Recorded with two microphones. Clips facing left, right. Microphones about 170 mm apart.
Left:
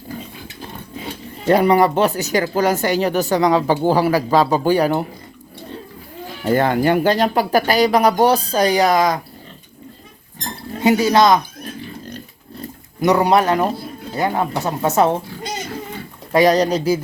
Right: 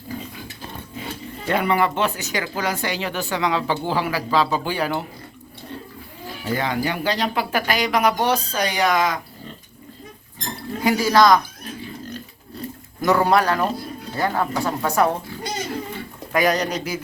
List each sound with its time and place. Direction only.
1.5 s speech: 35° left (ahead or behind)
6.4 s speech: 50° left (ahead or behind); by 9.1 s 35° left (ahead or behind)
10.8 s speech: 25° left (ahead or behind)
13.0 s a woman's voice: 20° left (ahead or behind)
16.3 s speech: 30° left (ahead or behind)